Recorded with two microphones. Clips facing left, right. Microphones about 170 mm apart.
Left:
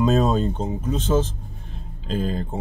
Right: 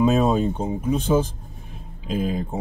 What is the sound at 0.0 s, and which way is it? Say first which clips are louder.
Speech: right 1 dB; 10° right (ahead or behind).